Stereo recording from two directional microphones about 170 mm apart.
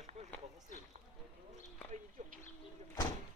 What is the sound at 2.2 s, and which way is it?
Bird, 45° right (ahead or behind).